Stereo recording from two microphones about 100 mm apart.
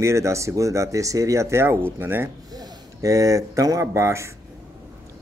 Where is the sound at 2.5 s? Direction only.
35° right (ahead or behind).